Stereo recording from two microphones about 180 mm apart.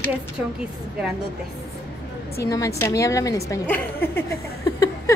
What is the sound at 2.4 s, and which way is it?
A woman's voice, 20° left (ahead or behind).